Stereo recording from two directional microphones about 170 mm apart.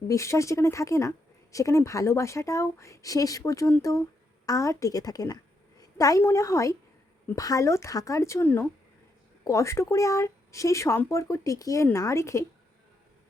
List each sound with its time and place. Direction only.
0.1 s a woman's voice: 15° left (ahead or behind)